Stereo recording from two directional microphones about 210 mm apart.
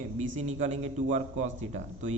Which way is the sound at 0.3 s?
35° right (ahead or behind).